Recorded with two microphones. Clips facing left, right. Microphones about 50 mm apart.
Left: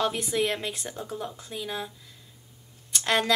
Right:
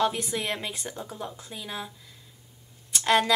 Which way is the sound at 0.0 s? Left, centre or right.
Centre.